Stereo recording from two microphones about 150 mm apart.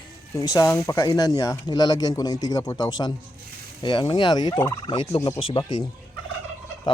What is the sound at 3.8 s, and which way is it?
Turkey, 30° left (ahead or behind).